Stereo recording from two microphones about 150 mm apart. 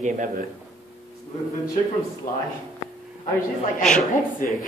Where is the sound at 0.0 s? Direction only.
60° right (ahead or behind).